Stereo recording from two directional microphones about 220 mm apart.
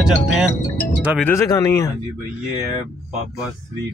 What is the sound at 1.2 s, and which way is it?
Speech, 15° left (ahead or behind).